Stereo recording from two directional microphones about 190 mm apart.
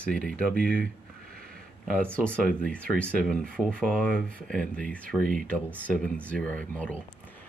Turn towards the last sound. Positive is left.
turn(degrees=10)  # may be behind; listen again after turning